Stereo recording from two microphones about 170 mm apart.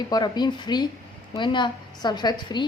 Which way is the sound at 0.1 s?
25° left (ahead or behind).